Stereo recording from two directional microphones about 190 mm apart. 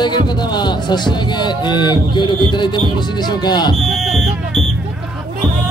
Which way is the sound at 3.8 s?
Centre (ahead or behind).